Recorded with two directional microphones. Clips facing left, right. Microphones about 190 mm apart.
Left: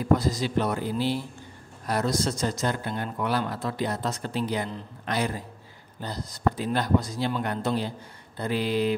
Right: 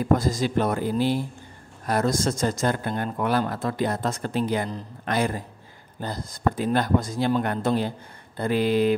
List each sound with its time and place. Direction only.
0.0 s speech: 50° right (ahead or behind)